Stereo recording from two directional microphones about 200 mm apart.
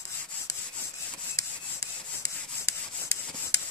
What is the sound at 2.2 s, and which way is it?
Rub, 15° left (ahead or behind).